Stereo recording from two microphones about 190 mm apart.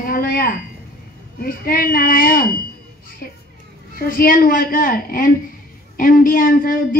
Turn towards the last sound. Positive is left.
turn(degrees=45)  # may be behind; listen again after turning